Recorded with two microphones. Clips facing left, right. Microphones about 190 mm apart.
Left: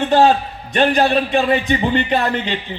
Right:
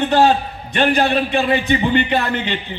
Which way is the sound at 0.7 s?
35° left (ahead or behind).